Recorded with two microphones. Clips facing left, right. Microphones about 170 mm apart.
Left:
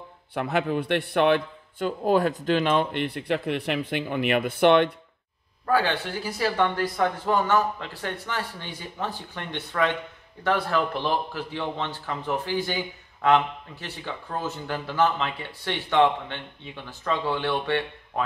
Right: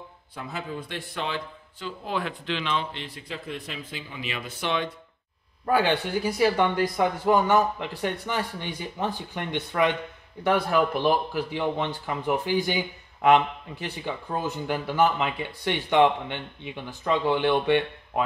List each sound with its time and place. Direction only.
0.3 s a man's voice: 70° left (ahead or behind)
5.7 s speech: 15° right (ahead or behind)